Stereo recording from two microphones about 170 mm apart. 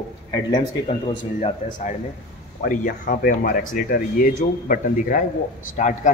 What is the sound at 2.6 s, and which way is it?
A man's voice, 55° left (ahead or behind).